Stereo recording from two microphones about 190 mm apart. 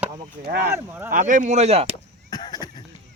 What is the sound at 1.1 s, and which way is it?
Speech, 40° right (ahead or behind).